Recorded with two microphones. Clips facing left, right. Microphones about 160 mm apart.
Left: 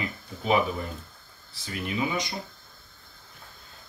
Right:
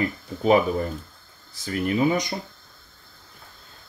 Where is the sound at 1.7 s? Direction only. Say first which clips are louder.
Right 8 dB; 45° right (ahead or behind).